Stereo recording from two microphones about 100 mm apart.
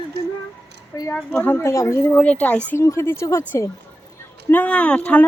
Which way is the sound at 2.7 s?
25° left (ahead or behind).